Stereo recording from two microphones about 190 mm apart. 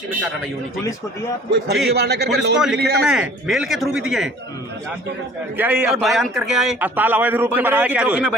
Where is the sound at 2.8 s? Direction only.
55° right (ahead or behind).